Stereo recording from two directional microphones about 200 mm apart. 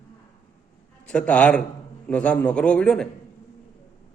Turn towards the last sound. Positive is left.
turn(degrees=5)  # may be behind; listen again after turning